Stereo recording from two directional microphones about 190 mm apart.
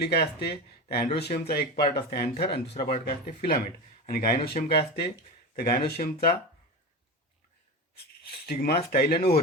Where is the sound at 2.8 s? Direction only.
40° left (ahead or behind).